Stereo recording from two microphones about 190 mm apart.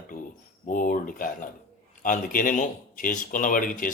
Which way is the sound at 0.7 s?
45° left (ahead or behind).